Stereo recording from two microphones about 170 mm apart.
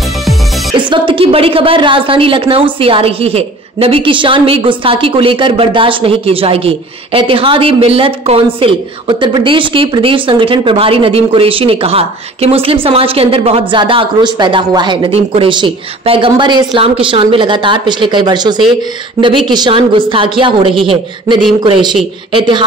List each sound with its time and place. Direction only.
0.7 s a woman's voice: 30° right (ahead or behind)